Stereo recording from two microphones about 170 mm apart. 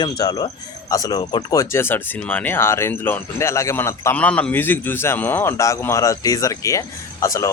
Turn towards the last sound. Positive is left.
turn(degrees=20)  # may be behind; listen again after turning